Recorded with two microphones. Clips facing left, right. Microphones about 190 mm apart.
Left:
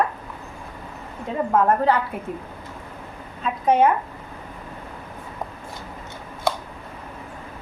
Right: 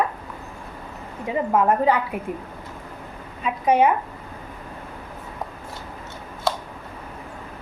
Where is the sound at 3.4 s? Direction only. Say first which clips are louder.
Even; 10° right (ahead or behind).